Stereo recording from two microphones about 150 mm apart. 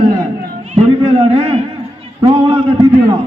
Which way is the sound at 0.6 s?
45° right (ahead or behind).